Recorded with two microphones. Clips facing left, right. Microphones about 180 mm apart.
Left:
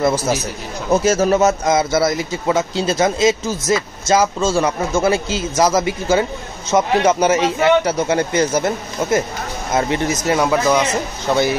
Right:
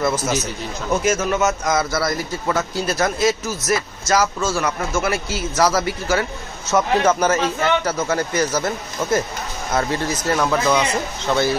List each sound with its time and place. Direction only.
0.0 s a man's voice: 35° left (ahead or behind); by 11.5 s 15° left (ahead or behind)